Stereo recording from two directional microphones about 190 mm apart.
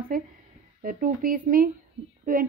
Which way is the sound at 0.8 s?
45° right (ahead or behind).